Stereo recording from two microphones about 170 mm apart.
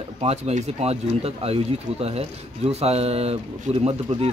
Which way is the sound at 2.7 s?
35° right (ahead or behind).